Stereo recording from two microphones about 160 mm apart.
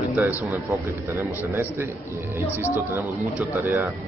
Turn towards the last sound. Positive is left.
turn(degrees=-15)  # may be behind; listen again after turning